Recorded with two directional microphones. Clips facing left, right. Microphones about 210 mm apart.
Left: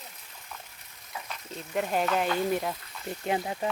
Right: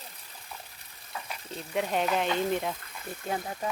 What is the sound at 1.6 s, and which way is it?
Speech, centre (ahead or behind).